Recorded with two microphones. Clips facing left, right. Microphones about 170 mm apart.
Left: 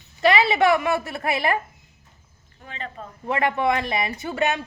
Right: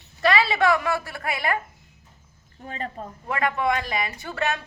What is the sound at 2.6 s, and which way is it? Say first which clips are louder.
Speech: right 3 dB; 40° right (ahead or behind).